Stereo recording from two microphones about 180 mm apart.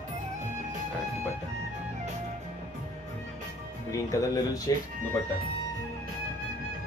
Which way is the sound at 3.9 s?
20° left (ahead or behind).